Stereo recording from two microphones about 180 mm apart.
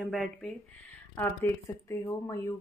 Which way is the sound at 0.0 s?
5° left (ahead or behind).